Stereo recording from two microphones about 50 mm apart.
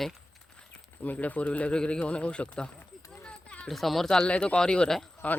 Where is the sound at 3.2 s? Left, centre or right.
Left.